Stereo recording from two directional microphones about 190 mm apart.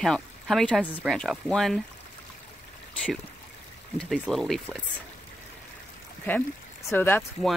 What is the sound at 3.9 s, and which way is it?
Speech, centre (ahead or behind).